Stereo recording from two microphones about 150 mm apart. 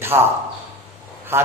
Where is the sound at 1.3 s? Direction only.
15° right (ahead or behind).